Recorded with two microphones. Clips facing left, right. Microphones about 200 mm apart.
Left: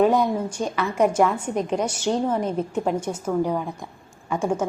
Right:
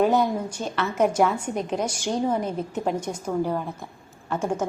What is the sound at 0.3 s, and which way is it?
A woman's voice, 5° left (ahead or behind).